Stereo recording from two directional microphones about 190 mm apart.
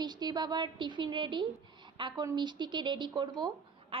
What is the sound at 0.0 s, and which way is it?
A woman's voice, 20° right (ahead or behind).